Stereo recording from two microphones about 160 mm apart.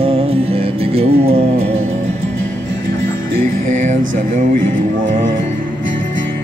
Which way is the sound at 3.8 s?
50° right (ahead or behind).